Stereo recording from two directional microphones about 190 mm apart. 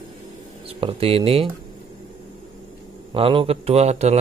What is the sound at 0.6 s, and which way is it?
Speech, 30° right (ahead or behind).